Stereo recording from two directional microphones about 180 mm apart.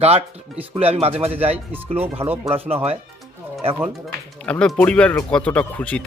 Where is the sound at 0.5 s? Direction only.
10° right (ahead or behind).